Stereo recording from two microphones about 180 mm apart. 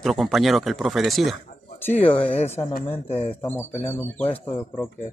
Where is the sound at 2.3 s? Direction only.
35° left (ahead or behind).